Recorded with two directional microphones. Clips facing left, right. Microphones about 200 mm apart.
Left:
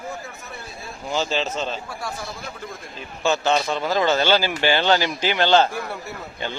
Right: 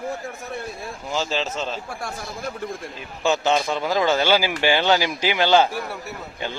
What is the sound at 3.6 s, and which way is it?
Speech, 5° right (ahead or behind).